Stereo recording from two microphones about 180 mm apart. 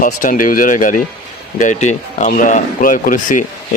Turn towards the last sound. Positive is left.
turn(degrees=45)  # may be behind; listen again after turning